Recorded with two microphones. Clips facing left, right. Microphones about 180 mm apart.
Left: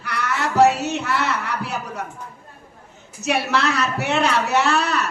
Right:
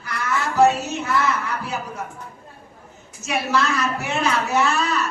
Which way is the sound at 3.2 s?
65° left (ahead or behind).